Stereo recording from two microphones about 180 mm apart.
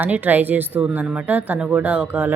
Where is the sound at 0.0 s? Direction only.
10° right (ahead or behind).